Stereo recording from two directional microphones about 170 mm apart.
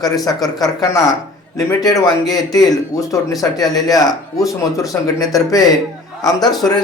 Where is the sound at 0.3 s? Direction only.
20° left (ahead or behind).